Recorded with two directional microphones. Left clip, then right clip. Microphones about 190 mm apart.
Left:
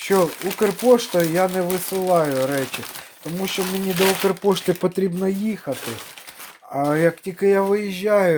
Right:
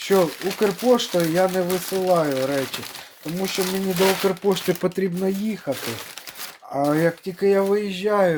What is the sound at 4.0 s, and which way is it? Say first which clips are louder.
Speech: left 1 dB; 35° left (ahead or behind).